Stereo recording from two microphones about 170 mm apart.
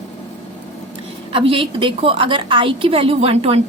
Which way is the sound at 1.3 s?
30° right (ahead or behind).